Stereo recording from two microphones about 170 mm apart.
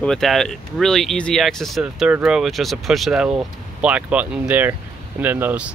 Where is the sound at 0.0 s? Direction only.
5° left (ahead or behind).